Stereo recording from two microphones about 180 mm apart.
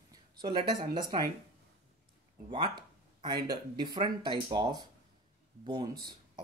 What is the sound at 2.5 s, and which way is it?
Speech, 25° right (ahead or behind).